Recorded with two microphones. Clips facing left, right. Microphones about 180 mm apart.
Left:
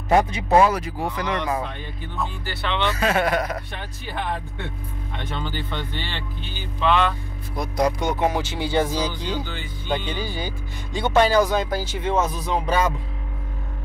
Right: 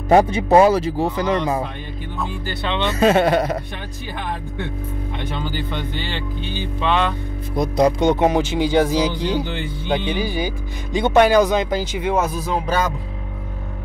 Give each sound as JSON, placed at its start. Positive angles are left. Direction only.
{"t": 0.1, "sound": "speech", "side_deg": -30}
{"t": 2.6, "sound": "speech", "side_deg": -20}
{"t": 5.4, "sound": "speech", "side_deg": -15}